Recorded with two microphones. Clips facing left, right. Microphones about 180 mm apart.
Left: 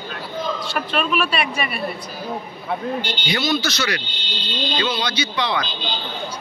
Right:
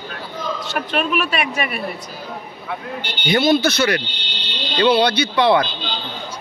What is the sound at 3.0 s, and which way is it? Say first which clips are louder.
A man's voice: right 5 dB; 55° right (ahead or behind).